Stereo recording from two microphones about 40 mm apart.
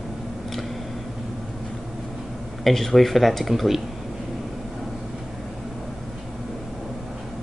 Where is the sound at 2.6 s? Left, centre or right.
Centre.